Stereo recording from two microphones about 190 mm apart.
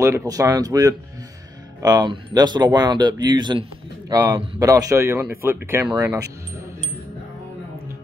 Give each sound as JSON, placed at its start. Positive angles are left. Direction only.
{"t": 0.0, "sound": "speech", "side_deg": -15}